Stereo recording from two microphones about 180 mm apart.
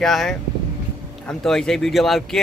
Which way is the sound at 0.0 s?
Centre (ahead or behind).